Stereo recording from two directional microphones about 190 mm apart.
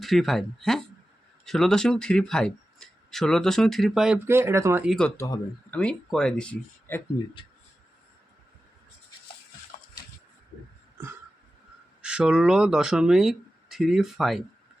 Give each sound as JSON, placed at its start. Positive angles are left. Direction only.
{"t": 0.0, "sound": "speech", "side_deg": 0}
{"t": 4.3, "sound": "speech", "side_deg": -15}
{"t": 5.1, "sound": "speech", "side_deg": 15}
{"t": 5.8, "sound": "speech", "side_deg": 5}
{"t": 12.0, "sound": "speech", "side_deg": -5}